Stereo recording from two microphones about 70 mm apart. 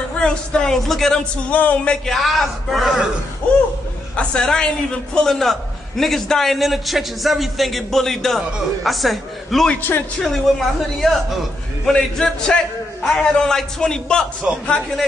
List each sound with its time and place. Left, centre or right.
0.2 s a man's voice: centre
1.5 s speech: left
2.0 s a man's voice: centre
4.2 s a man's voice: centre
9.8 s speech: left
10.5 s a man's voice: centre
14.5 s a man's voice: centre